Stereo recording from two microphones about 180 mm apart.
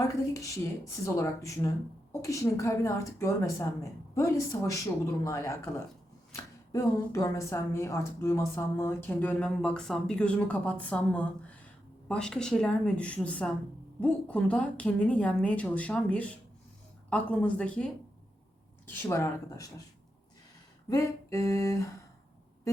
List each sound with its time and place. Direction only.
0.3 s a woman's voice: 15° left (ahead or behind)
20.9 s speech: 15° left (ahead or behind)